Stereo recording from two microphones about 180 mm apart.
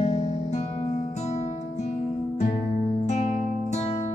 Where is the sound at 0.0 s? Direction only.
40° left (ahead or behind).